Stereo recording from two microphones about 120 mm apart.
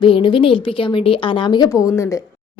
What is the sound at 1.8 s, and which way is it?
Speech, 25° left (ahead or behind).